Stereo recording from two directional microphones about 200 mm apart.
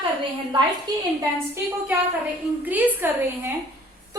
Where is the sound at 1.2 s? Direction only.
10° right (ahead or behind).